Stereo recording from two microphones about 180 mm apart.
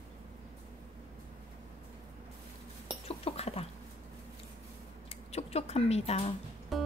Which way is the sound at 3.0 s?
35° left (ahead or behind).